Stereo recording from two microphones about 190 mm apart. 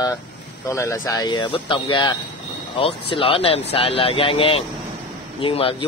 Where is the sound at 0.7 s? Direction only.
15° left (ahead or behind).